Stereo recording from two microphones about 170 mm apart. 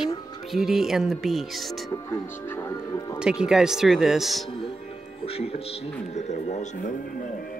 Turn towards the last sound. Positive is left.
turn(degrees=45)  # may be behind; listen again after turning